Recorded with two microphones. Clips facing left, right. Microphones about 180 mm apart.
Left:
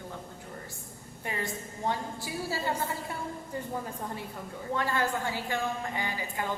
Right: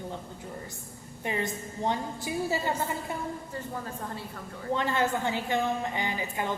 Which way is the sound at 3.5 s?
15° left (ahead or behind).